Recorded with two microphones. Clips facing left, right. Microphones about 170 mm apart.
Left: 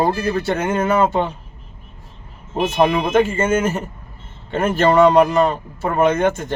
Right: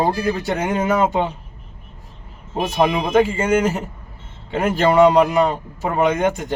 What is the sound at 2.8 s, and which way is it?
Speech, 15° right (ahead or behind).